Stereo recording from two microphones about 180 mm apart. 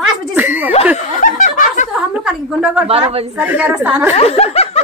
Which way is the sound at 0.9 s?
45° left (ahead or behind).